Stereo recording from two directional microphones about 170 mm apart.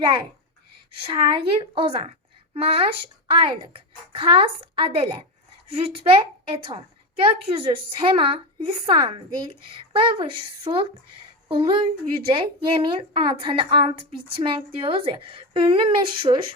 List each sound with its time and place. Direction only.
0.0 s a woman's voice: 25° right (ahead or behind)